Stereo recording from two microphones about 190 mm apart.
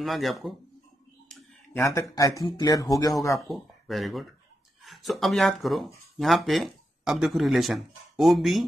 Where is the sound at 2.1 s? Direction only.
15° left (ahead or behind).